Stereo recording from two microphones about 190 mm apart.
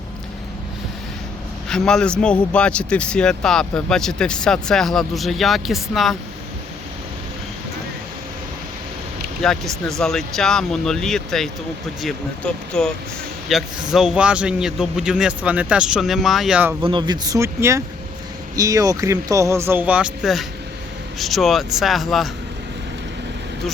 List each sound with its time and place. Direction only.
1.7 s speech: 5° left (ahead or behind)
9.4 s speech: 5° left (ahead or behind)
16.8 s speech: 25° right (ahead or behind); by 22.3 s centre (ahead or behind)